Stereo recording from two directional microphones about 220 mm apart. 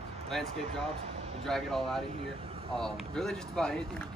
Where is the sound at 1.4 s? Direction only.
Centre (ahead or behind).